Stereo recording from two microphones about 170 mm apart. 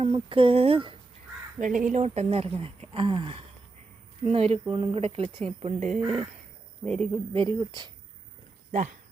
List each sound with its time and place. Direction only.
0.0 s speech: 35° right (ahead or behind)
1.5 s speech: 50° right (ahead or behind)
6.8 s a woman's voice: 5° left (ahead or behind)
7.3 s speech: 25° right (ahead or behind)
8.7 s speech: 45° right (ahead or behind)